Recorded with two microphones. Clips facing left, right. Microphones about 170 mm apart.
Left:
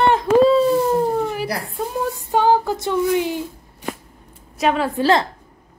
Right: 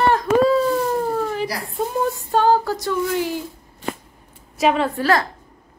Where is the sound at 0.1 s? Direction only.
25° left (ahead or behind).